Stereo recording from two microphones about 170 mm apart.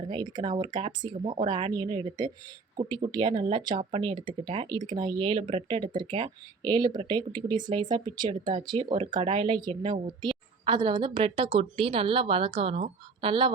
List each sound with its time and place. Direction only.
0.1 s speech: 25° right (ahead or behind)